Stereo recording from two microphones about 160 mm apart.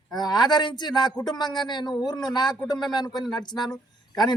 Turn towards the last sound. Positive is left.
turn(degrees=25)  # may be behind; listen again after turning